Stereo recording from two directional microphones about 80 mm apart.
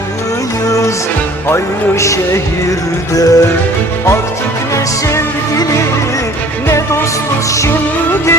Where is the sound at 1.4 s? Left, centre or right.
Left.